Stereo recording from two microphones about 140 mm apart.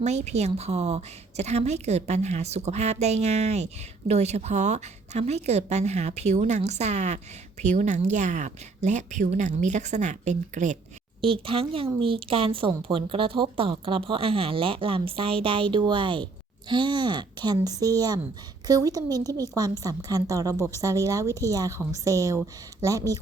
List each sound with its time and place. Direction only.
0.0 s a woman's voice: 55° right (ahead or behind)
11.2 s a woman's voice: 40° right (ahead or behind); by 23.2 s 25° right (ahead or behind)